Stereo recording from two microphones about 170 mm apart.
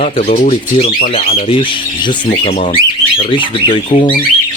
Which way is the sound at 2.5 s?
40° left (ahead or behind).